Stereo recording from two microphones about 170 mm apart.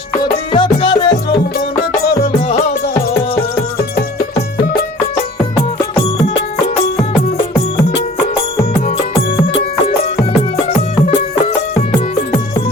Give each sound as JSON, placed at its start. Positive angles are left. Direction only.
{"t": 0.5, "sound": "music", "side_deg": 30}
{"t": 4.6, "sound": "music", "side_deg": 60}